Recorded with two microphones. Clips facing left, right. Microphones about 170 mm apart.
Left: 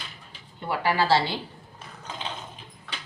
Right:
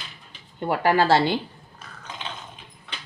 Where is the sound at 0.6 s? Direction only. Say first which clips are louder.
Right 5 dB; 50° right (ahead or behind).